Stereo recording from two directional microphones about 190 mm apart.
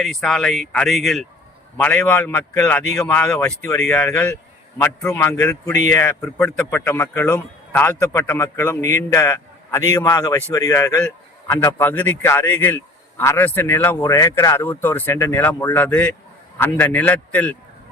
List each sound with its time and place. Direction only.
0.0 s a man's voice: centre (ahead or behind)